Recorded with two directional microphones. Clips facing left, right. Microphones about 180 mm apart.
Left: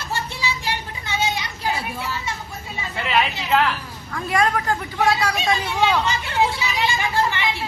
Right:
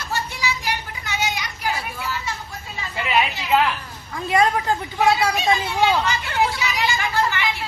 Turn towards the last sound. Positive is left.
turn(degrees=25)  # may be behind; listen again after turning